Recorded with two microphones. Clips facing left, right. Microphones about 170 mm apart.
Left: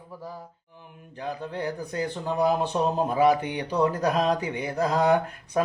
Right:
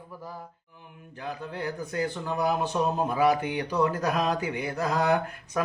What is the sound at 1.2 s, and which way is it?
Speech, 30° left (ahead or behind).